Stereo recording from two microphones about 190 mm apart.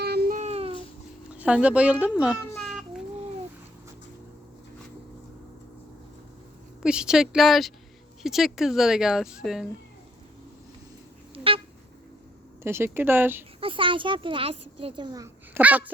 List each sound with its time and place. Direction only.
0.0 s a sound: 55° right (ahead or behind)
0.3 s a sound: 35° right (ahead or behind)
1.3 s speech: 5° right (ahead or behind)
2.6 s cat: centre (ahead or behind)
6.8 s speech: 5° right (ahead or behind)
12.6 s speech: 10° right (ahead or behind)
13.6 s a child's voice: 25° right (ahead or behind); by 15.9 s 10° right (ahead or behind)